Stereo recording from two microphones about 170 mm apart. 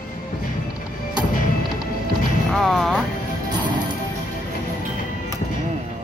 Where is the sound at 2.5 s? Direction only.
Centre (ahead or behind).